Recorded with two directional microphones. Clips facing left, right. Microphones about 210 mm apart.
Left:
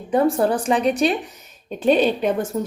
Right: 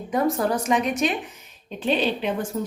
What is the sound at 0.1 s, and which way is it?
Speech, 30° left (ahead or behind).